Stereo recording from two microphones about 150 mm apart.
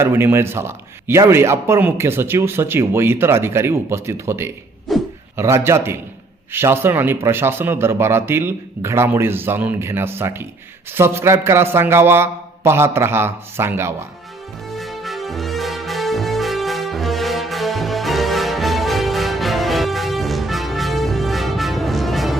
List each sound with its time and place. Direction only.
0.0 s speech: 15° right (ahead or behind)
4.9 s a sound: centre (ahead or behind)
5.4 s speech: 20° right (ahead or behind)
14.8 s music: centre (ahead or behind)